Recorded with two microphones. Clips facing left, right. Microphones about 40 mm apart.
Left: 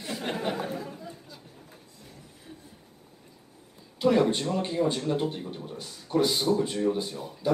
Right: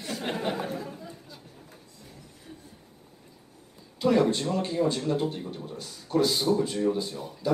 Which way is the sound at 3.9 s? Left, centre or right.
Centre.